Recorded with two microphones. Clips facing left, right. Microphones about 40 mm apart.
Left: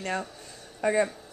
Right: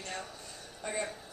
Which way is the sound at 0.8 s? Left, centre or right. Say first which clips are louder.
Left 12 dB; left.